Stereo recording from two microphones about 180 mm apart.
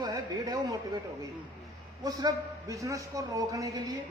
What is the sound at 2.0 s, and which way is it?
A man's voice, 20° right (ahead or behind).